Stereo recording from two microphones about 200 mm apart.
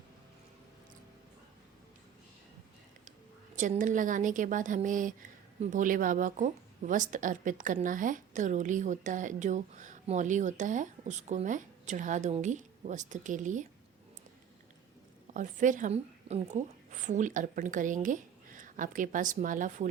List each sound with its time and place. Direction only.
3.5 s a woman's voice: 40° right (ahead or behind)
15.3 s a woman's voice: 40° right (ahead or behind)